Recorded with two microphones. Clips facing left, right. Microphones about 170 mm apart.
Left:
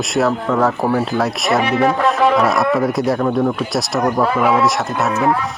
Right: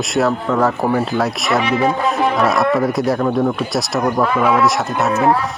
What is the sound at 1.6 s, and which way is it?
Speech, 65° left (ahead or behind).